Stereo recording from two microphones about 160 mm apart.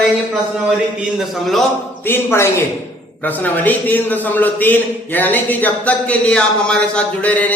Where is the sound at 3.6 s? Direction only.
10° left (ahead or behind).